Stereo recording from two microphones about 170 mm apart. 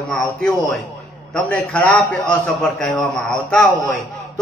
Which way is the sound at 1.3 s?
10° left (ahead or behind).